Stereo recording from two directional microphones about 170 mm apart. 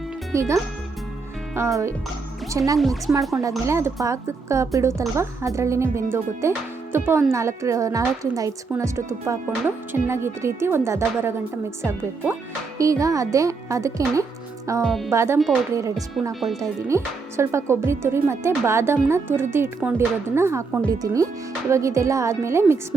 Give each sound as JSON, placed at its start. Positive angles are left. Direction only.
{"t": 0.3, "sound": "a woman's voice", "side_deg": -15}
{"t": 2.7, "sound": "speech", "side_deg": 0}
{"t": 3.7, "sound": "a woman's voice", "side_deg": -15}
{"t": 14.8, "sound": "speech", "side_deg": 5}
{"t": 15.1, "sound": "a woman's voice", "side_deg": -15}